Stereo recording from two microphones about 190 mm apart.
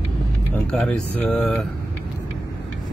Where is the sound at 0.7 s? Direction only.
5° left (ahead or behind).